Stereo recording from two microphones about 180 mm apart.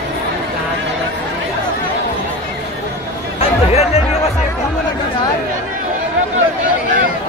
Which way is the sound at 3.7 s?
35° left (ahead or behind).